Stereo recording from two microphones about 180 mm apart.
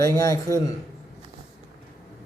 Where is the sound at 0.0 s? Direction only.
20° left (ahead or behind).